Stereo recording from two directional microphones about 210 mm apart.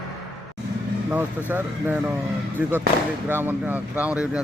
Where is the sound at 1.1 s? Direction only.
10° right (ahead or behind).